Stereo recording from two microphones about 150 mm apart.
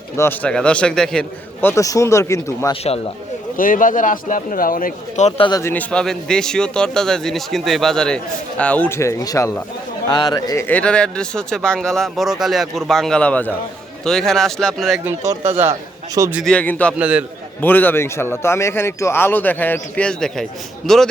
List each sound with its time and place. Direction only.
0.2 s a man's voice: 10° left (ahead or behind)
1.6 s speech: 20° left (ahead or behind)
3.6 s speech: 60° left (ahead or behind)
5.5 s speech: 25° left (ahead or behind)
5.7 s a man's voice: 5° left (ahead or behind); by 10.7 s 25° left (ahead or behind)
10.7 s a man's voice: 10° left (ahead or behind)
15.3 s speech: 15° right (ahead or behind)
16.4 s a man's voice: 5° left (ahead or behind)
17.0 s speech: 10° right (ahead or behind)
17.6 s a man's voice: 10° left (ahead or behind)